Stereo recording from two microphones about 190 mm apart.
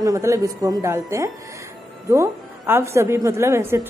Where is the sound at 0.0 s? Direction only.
15° right (ahead or behind).